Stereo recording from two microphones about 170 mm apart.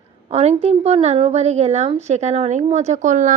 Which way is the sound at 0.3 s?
40° right (ahead or behind).